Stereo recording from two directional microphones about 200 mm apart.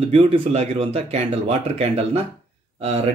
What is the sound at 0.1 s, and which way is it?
Speech, 30° right (ahead or behind).